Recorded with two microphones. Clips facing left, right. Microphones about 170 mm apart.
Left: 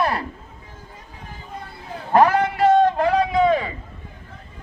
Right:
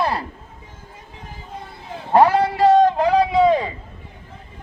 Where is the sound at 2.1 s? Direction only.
30° right (ahead or behind).